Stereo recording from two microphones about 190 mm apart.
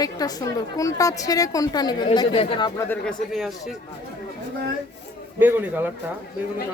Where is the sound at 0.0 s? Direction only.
20° left (ahead or behind).